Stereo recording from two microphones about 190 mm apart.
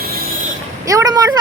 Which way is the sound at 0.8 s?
15° right (ahead or behind).